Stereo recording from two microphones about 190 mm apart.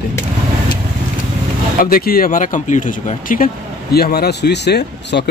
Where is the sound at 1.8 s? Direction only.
50° left (ahead or behind).